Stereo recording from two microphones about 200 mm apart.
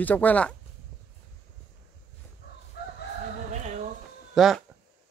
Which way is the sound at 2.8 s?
50° left (ahead or behind).